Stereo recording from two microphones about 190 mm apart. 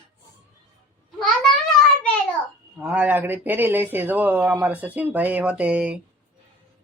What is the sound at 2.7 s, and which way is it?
Speech, 5° right (ahead or behind).